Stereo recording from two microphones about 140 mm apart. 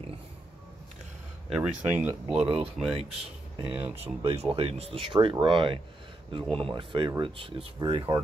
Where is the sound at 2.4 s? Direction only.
40° right (ahead or behind).